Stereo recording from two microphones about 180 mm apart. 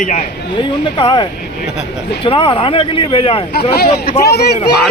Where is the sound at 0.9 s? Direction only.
25° left (ahead or behind).